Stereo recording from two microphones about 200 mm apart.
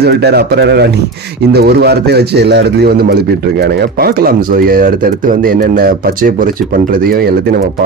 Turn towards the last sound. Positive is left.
turn(degrees=-50)  # may be behind; listen again after turning